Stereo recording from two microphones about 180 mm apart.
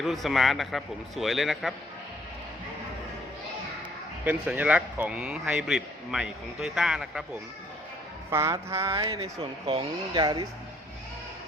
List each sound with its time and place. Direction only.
0.0 s a man's voice: centre (ahead or behind)
4.3 s a man's voice: 10° right (ahead or behind)
8.3 s music: 15° right (ahead or behind)
8.9 s speech: 25° right (ahead or behind)